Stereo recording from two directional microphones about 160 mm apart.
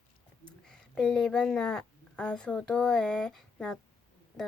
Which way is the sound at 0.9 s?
5° left (ahead or behind).